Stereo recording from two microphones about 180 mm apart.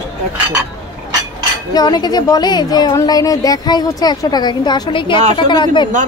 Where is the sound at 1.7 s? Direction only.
25° left (ahead or behind).